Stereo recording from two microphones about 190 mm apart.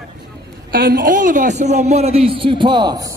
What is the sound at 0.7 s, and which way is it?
A woman's voice, 50° right (ahead or behind).